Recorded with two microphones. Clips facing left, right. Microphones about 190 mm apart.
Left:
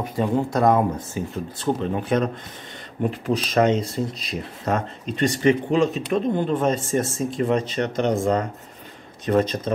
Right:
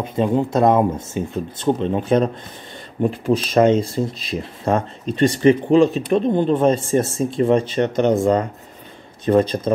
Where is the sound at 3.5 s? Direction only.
35° right (ahead or behind).